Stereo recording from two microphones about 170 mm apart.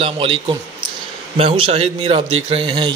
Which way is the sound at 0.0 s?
30° right (ahead or behind).